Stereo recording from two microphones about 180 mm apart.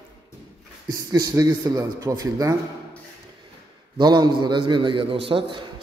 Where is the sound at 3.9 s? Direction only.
25° right (ahead or behind).